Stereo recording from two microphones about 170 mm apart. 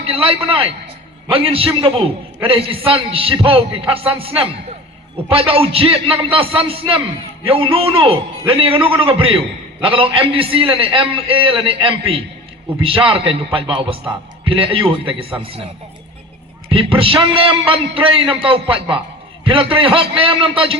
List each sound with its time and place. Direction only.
0.0 s a man's voice: 35° right (ahead or behind)
16.6 s a man's voice: 30° right (ahead or behind)